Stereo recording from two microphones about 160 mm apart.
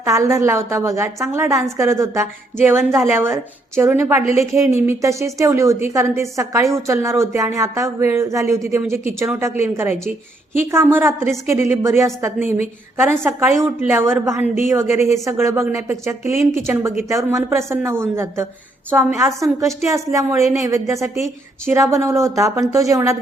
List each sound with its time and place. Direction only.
0.0 s a woman's voice: 20° right (ahead or behind)
10.6 s a woman's voice: 15° right (ahead or behind)